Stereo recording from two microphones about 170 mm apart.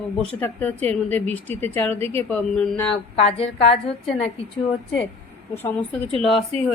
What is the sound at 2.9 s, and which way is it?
A woman's voice, 35° left (ahead or behind).